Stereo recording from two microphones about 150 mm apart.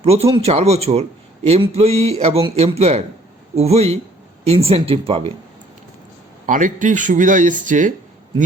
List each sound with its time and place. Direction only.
0.0 s speech: 40° right (ahead or behind)
6.4 s speech: 60° right (ahead or behind)